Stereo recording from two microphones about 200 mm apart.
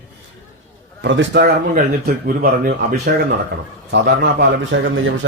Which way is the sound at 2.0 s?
45° right (ahead or behind).